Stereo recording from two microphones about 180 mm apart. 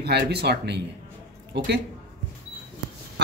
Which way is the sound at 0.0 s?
65° right (ahead or behind).